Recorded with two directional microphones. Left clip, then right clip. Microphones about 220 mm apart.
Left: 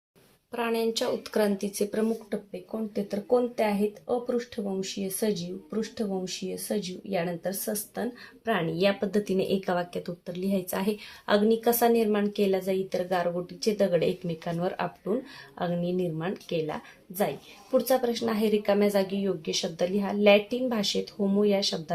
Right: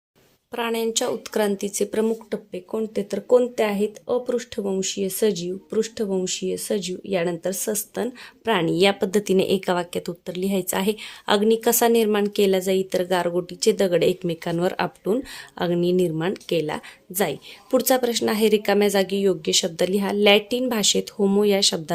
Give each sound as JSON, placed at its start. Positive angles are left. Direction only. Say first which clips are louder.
{"t": 0.5, "sound": "speech", "louder": "right 4 dB", "side_deg": -30}